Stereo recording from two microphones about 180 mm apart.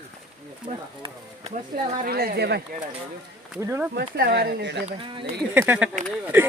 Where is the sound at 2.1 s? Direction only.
60° right (ahead or behind).